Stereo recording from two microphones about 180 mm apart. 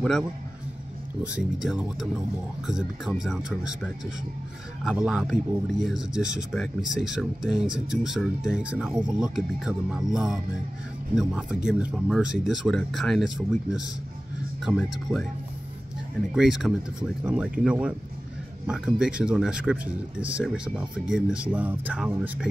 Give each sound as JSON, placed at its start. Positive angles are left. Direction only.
{"t": 1.2, "sound": "speech", "side_deg": -5}
{"t": 4.8, "sound": "speech", "side_deg": -5}